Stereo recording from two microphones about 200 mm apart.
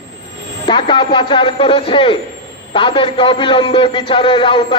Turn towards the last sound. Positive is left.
turn(degrees=25)  # may be behind; listen again after turning